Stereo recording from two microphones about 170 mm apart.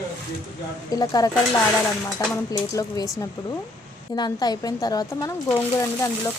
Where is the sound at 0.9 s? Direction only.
20° left (ahead or behind).